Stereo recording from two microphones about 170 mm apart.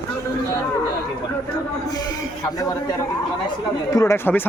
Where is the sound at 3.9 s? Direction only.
20° left (ahead or behind).